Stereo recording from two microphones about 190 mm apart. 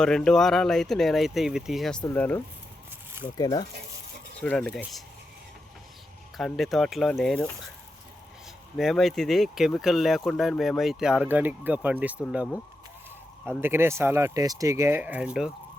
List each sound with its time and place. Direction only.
0.0 s speech: 5° left (ahead or behind)
3.3 s speech: 20° left (ahead or behind)
4.4 s speech: 5° left (ahead or behind)
6.3 s speech: centre (ahead or behind)
8.7 s speech: centre (ahead or behind)